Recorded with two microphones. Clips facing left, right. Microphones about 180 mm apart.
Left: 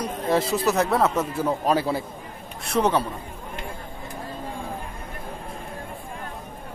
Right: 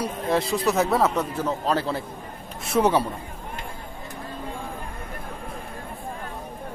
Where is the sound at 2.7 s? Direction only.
10° right (ahead or behind).